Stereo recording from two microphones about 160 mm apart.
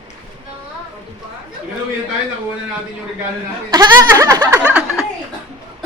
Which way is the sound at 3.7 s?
25° right (ahead or behind).